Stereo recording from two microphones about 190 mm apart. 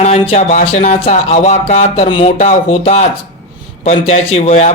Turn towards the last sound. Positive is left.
turn(degrees=35)  # may be behind; listen again after turning